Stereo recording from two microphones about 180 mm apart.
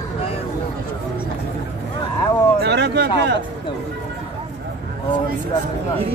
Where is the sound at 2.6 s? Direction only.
70° right (ahead or behind).